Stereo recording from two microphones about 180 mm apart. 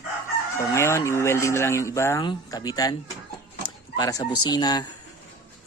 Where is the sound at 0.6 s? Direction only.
15° left (ahead or behind).